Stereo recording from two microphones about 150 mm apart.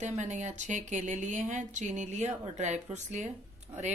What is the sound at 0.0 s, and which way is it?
Speech, 55° right (ahead or behind).